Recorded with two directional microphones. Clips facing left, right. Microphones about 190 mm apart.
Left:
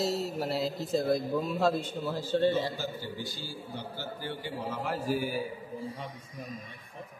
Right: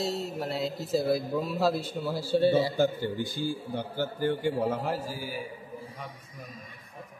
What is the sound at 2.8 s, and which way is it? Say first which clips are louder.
A man's voice: right 10 dB; 55° right (ahead or behind).